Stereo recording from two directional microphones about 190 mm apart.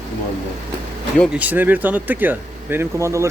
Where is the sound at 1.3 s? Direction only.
10° right (ahead or behind).